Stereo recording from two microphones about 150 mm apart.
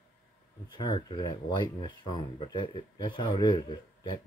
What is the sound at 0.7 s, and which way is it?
Speech, 30° left (ahead or behind).